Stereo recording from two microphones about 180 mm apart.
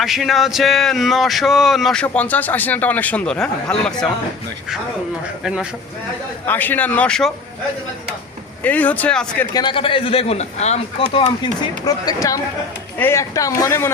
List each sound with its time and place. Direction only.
0.0 s speech: centre (ahead or behind)
5.4 s speech: 5° right (ahead or behind)
6.4 s a man's voice: 10° left (ahead or behind)
8.6 s a man's voice: 10° left (ahead or behind)
9.5 s a man's voice: 25° left (ahead or behind)